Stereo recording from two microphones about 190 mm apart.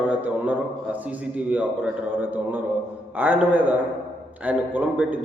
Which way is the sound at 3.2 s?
10° right (ahead or behind).